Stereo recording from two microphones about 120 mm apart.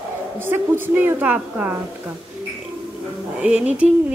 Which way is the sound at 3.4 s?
10° right (ahead or behind).